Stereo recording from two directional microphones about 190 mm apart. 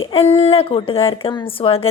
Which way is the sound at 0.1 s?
30° left (ahead or behind).